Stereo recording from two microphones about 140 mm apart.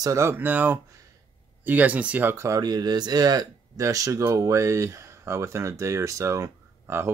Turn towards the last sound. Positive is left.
turn(degrees=-20)  # may be behind; listen again after turning